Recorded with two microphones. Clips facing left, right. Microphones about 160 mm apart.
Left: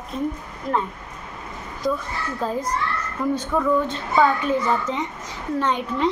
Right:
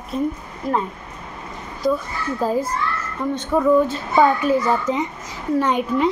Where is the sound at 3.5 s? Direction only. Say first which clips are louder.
Right 7 dB; 20° right (ahead or behind).